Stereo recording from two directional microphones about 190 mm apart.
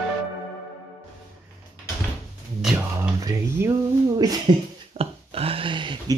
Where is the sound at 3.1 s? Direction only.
15° right (ahead or behind).